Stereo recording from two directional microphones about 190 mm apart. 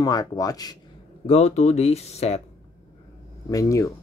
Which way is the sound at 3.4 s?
15° left (ahead or behind).